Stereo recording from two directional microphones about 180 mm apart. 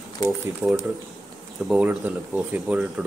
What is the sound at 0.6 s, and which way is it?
Speech, 5° left (ahead or behind).